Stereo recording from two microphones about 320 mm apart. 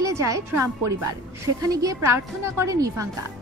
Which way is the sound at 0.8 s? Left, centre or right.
Right.